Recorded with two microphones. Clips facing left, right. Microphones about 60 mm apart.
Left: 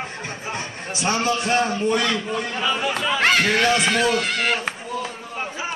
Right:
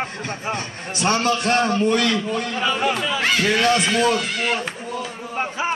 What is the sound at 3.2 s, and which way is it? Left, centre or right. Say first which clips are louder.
Speech: left 1 dB; left.